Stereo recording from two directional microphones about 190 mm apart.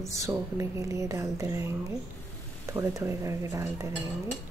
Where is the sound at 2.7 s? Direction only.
15° right (ahead or behind).